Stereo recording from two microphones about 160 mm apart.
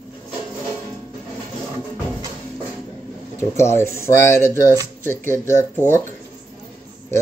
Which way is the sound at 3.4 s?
15° left (ahead or behind).